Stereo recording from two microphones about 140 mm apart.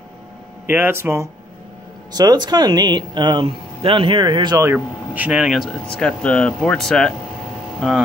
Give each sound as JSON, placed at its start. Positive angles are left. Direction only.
{"t": 0.7, "sound": "speech", "side_deg": -15}
{"t": 2.1, "sound": "speech", "side_deg": -30}
{"t": 4.7, "sound": "speech", "side_deg": -10}